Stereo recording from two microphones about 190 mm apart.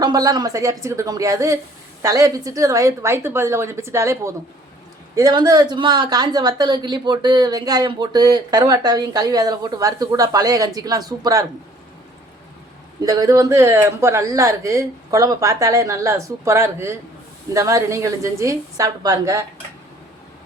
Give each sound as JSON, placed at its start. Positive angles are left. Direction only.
{"t": 0.0, "sound": "a woman's voice", "side_deg": -20}
{"t": 13.0, "sound": "speech", "side_deg": -20}